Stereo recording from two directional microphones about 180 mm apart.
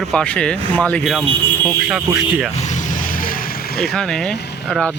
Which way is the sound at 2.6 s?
40° left (ahead or behind).